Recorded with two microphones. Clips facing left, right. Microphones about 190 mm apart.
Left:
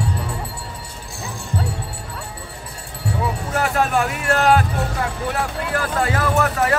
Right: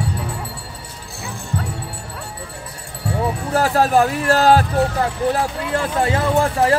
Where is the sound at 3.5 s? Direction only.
35° right (ahead or behind).